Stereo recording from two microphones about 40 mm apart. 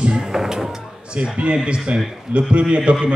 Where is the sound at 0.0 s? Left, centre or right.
Right.